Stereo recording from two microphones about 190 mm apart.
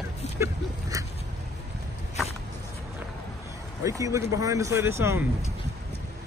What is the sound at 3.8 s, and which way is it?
Speech, 15° right (ahead or behind).